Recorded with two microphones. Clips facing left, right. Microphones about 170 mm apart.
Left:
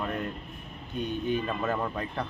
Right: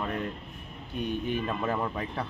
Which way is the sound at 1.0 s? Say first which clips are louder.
Left 1 dB; 5° right (ahead or behind).